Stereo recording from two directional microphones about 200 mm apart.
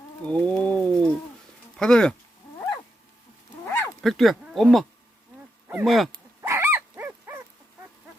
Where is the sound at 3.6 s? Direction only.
5° left (ahead or behind).